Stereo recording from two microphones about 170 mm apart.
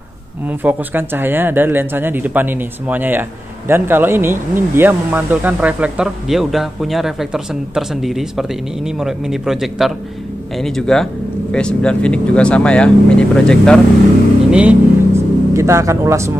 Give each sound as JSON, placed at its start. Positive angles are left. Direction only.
{"t": 0.5, "sound": "speech", "side_deg": -10}
{"t": 14.5, "sound": "vehicle", "side_deg": -5}